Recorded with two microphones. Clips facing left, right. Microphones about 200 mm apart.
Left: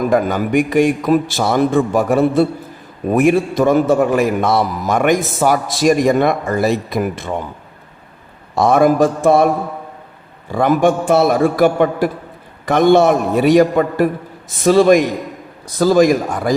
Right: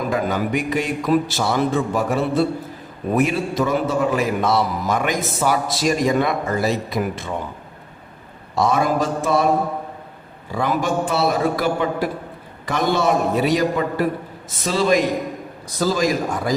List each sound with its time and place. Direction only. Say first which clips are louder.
0.1 s a man's voice: left 6 dB; 50° left (ahead or behind)
8.5 s a man's voice: left 7 dB; 50° left (ahead or behind)
10.5 s a man's voice: left 7 dB; 50° left (ahead or behind)